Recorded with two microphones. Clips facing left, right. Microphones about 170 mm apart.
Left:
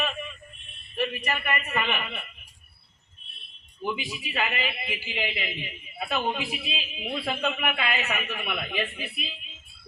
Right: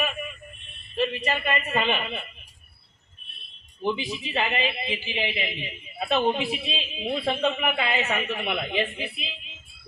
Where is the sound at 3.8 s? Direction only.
25° right (ahead or behind).